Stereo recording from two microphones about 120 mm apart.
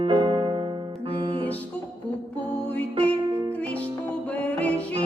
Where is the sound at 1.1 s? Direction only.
50° right (ahead or behind).